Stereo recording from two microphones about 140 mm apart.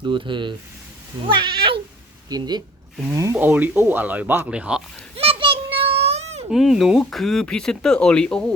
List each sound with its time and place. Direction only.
0.0 s speech: 35° right (ahead or behind)
3.3 s speech: 10° right (ahead or behind)
5.1 s children playing: 40° right (ahead or behind)
6.5 s speech: centre (ahead or behind)